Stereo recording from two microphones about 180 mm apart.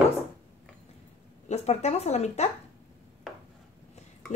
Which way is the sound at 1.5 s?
35° left (ahead or behind).